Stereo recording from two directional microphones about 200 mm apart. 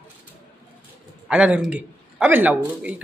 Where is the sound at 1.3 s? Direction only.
5° right (ahead or behind).